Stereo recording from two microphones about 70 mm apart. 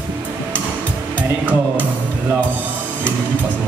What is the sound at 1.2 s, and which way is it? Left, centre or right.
Music, right.